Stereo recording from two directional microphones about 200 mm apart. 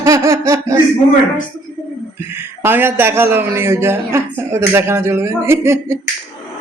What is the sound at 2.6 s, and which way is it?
A man's voice, 10° right (ahead or behind).